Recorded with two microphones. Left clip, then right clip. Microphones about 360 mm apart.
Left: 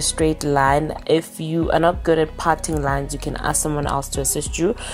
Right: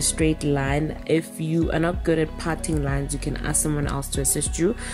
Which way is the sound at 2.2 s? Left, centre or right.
Left.